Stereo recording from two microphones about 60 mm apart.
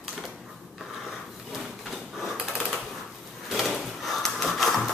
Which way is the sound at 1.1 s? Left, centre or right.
Centre.